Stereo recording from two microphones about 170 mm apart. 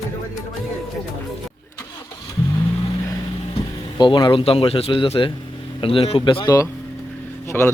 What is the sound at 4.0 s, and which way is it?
Speech, 25° left (ahead or behind).